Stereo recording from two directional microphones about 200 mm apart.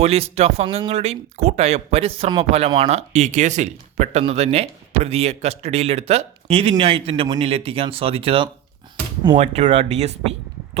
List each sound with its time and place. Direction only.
0.0 s speech: 30° right (ahead or behind)